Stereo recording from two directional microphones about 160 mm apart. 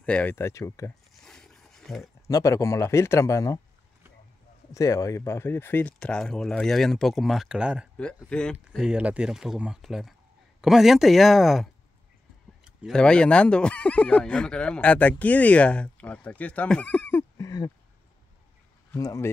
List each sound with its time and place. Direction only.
0.0 s speech: 10° left (ahead or behind)
1.1 s wild animals: 5° left (ahead or behind)
2.2 s speech: 20° left (ahead or behind)
4.7 s speech: 20° left (ahead or behind); by 7.9 s 5° right (ahead or behind)
8.3 s speech: 5° left (ahead or behind)
8.8 s speech: 5° right (ahead or behind); by 17.6 s 20° left (ahead or behind)
18.9 s speech: 20° left (ahead or behind)